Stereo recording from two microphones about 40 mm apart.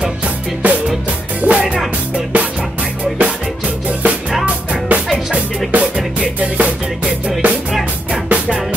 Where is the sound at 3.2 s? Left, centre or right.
Right.